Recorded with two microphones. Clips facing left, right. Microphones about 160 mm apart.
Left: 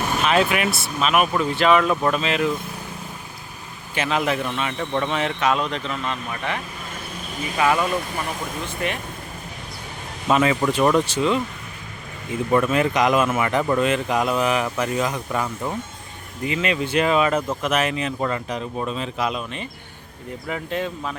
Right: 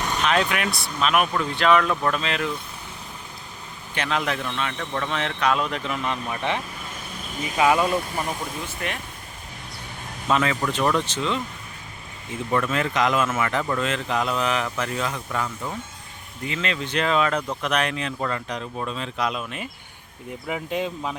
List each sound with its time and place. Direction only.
0.2 s speech: 5° left (ahead or behind)
3.9 s speech: 5° left (ahead or behind)
5.2 s speech: centre (ahead or behind); by 6.6 s 20° right (ahead or behind)
7.6 s speech: 15° right (ahead or behind)
10.2 s speech: 15° left (ahead or behind)
12.5 s speech: 15° left (ahead or behind); by 21.2 s 15° right (ahead or behind)